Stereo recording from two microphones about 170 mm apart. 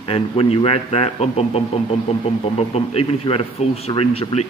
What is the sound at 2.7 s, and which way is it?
A man's voice, 35° left (ahead or behind).